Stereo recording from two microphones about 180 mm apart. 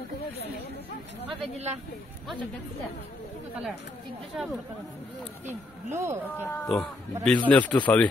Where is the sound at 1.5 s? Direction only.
35° right (ahead or behind).